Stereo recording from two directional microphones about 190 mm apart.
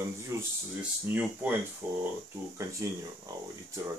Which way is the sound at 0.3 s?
15° right (ahead or behind).